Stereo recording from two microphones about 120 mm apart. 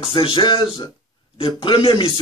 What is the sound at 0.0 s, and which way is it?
Speech, 45° left (ahead or behind).